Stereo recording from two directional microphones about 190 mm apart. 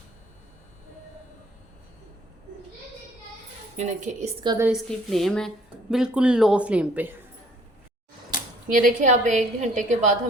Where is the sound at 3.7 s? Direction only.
40° right (ahead or behind).